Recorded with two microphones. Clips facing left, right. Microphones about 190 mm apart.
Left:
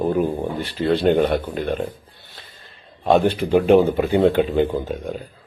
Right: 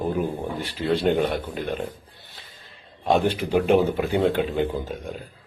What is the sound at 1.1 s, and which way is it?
Speech, 55° left (ahead or behind).